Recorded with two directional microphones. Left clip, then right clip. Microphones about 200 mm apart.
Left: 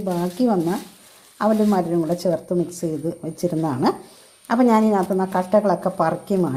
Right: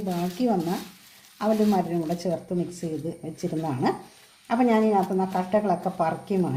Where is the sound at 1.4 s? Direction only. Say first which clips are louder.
Left 4 dB; 25° left (ahead or behind).